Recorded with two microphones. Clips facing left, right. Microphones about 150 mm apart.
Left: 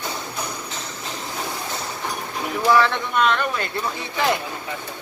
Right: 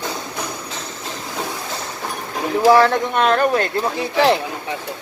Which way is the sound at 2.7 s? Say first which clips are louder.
Right 5 dB; 40° right (ahead or behind).